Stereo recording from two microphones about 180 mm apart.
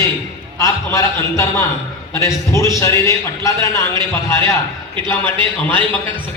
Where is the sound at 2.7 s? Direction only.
15° left (ahead or behind).